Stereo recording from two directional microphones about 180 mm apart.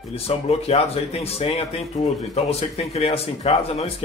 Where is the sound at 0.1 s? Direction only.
35° left (ahead or behind).